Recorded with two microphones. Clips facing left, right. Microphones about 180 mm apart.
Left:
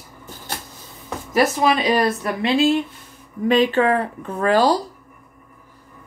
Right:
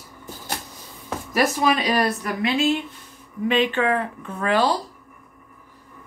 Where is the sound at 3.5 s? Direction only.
40° left (ahead or behind).